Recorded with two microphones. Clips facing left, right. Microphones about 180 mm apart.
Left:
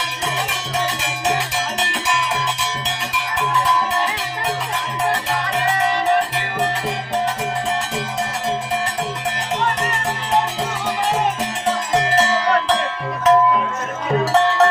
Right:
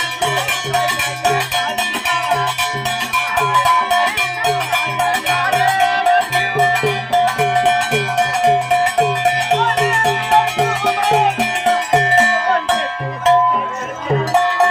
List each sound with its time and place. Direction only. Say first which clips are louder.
0.7 s music: right 6 dB; 70° right (ahead or behind)
4.4 s music: right 7 dB; 75° right (ahead or behind)
6.8 s cowbell: right 6 dB; 75° right (ahead or behind)
8.4 s music: right 9 dB; 70° right (ahead or behind); by 12.7 s 50° right (ahead or behind)